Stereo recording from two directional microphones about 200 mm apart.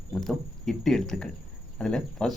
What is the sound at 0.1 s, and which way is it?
Speech, centre (ahead or behind).